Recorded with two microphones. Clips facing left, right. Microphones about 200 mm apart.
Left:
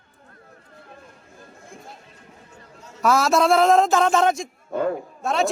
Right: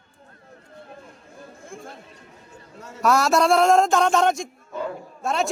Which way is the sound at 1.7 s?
50° right (ahead or behind).